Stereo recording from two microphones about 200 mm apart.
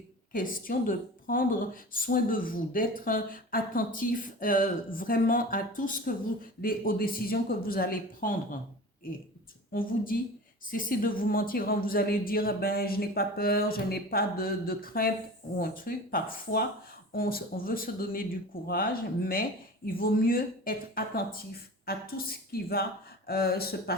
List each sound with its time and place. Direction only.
0.3 s a woman's voice: 45° left (ahead or behind)
9.7 s a woman's voice: 45° left (ahead or behind)